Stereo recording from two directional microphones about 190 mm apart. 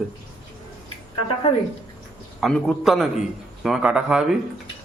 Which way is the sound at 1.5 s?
35° left (ahead or behind).